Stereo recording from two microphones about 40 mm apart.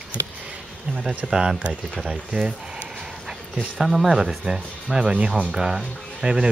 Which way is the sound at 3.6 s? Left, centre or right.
Centre.